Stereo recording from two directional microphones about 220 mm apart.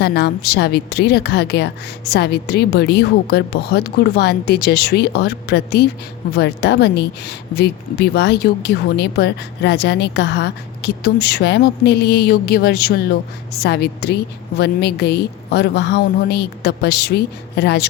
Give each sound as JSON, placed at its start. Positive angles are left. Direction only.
{"t": 0.0, "sound": "speech", "side_deg": 50}